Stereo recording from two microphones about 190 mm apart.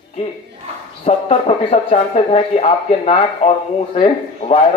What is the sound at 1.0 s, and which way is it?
Speech, 35° left (ahead or behind).